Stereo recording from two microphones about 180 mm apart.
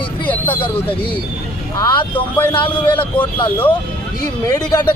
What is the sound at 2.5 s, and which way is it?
Speech, 25° left (ahead or behind).